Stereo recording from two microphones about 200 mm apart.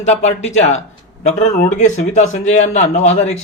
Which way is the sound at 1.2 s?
35° left (ahead or behind).